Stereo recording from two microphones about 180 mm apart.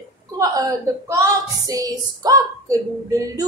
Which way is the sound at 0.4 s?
20° right (ahead or behind).